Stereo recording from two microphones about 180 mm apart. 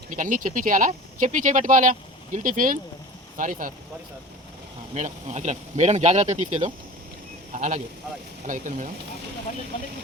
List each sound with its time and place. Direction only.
0.1 s speech: 45° right (ahead or behind)
4.9 s speech: 40° right (ahead or behind)